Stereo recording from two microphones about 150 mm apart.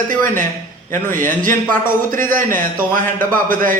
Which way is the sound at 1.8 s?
65° right (ahead or behind).